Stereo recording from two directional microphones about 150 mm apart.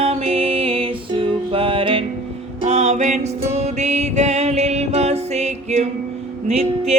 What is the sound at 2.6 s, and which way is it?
Music, 45° right (ahead or behind).